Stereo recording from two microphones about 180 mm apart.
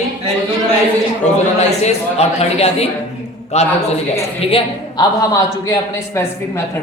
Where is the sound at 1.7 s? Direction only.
40° left (ahead or behind).